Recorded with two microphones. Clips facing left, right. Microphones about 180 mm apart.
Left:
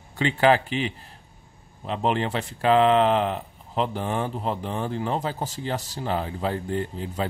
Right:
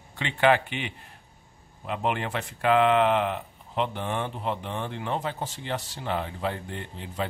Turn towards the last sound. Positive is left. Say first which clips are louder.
# left 5 dB
turn(degrees=40)  # may be behind; listen again after turning